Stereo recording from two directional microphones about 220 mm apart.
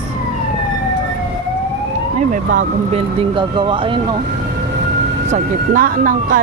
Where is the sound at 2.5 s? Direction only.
25° right (ahead or behind).